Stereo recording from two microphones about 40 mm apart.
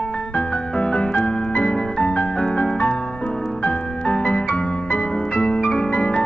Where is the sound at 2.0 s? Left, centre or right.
Left.